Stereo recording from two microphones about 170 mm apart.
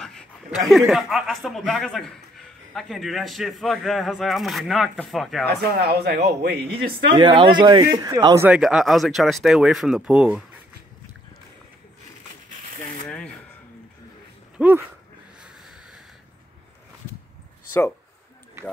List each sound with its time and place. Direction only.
0.0 s a man's voice: 5° left (ahead or behind)
5.6 s speech: 65° right (ahead or behind)
7.2 s a man's voice: 30° right (ahead or behind)
8.4 s a man's voice: 5° right (ahead or behind)
13.0 s a sound: 5° left (ahead or behind)
14.6 s a man's voice: 5° right (ahead or behind)